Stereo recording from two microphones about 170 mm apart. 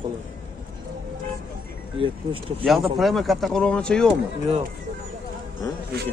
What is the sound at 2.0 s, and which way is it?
Speech, 30° right (ahead or behind).